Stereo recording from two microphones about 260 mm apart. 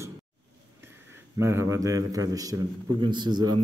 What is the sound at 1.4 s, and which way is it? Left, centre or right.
A man's voice, centre.